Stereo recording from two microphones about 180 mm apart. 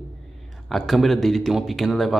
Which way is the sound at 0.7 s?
Centre (ahead or behind).